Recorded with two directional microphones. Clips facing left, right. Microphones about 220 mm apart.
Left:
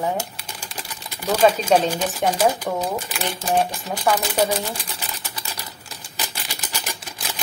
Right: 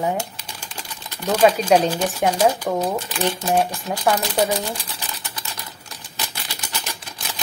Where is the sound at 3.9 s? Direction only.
10° right (ahead or behind).